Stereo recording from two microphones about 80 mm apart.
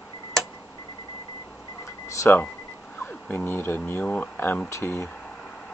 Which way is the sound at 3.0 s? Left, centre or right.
Left.